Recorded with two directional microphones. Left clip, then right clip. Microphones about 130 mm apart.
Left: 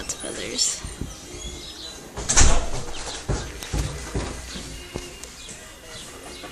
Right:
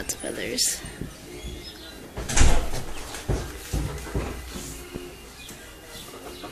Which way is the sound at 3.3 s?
35° right (ahead or behind).